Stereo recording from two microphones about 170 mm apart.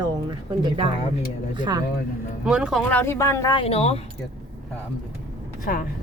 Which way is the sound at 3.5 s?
35° left (ahead or behind).